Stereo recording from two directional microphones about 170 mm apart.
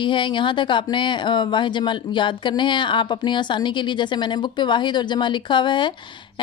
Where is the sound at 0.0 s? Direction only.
30° left (ahead or behind).